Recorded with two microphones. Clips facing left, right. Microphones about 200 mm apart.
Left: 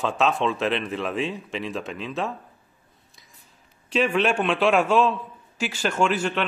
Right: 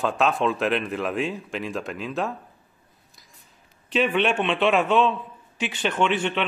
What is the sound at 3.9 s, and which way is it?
A man's voice, centre (ahead or behind).